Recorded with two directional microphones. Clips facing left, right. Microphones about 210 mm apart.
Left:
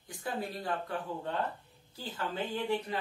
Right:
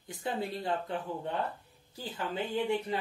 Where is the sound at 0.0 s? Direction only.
20° right (ahead or behind).